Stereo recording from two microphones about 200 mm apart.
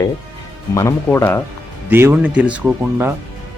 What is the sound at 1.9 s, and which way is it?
Speech, 10° right (ahead or behind).